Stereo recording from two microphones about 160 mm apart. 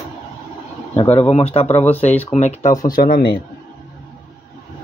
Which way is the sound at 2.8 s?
60° left (ahead or behind).